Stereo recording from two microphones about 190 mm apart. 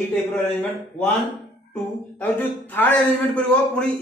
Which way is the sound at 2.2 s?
10° left (ahead or behind).